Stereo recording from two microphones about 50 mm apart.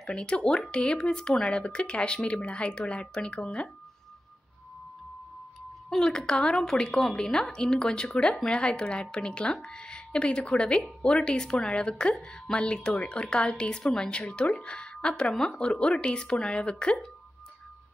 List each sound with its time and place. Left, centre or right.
0.0 s a woman's voice: centre
5.9 s a woman's voice: centre